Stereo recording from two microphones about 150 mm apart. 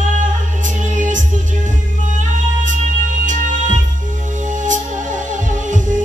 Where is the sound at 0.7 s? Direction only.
55° right (ahead or behind).